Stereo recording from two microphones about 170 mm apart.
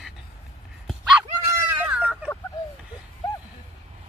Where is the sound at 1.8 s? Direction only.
10° right (ahead or behind).